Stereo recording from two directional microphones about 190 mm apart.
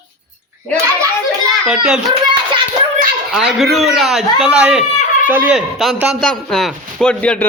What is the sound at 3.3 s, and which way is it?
A man's voice, centre (ahead or behind).